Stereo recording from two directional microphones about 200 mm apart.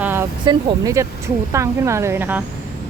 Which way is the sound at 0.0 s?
10° right (ahead or behind).